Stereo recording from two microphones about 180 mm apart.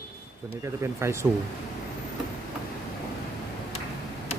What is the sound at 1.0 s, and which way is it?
Speech, 15° right (ahead or behind).